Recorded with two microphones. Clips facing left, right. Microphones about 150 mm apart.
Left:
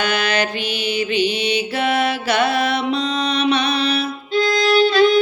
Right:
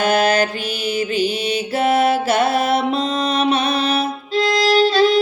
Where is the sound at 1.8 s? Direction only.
45° right (ahead or behind).